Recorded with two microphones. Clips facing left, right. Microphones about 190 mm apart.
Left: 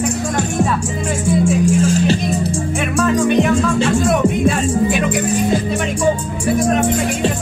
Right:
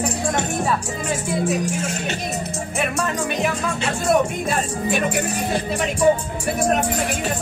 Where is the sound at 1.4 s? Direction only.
30° left (ahead or behind).